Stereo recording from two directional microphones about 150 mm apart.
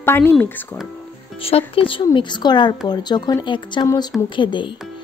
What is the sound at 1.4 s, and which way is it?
A woman's voice, 40° left (ahead or behind).